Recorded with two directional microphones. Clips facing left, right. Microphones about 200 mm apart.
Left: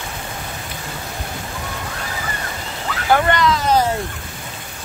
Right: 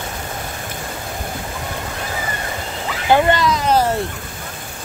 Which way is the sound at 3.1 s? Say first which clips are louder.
Right 2 dB; 20° right (ahead or behind).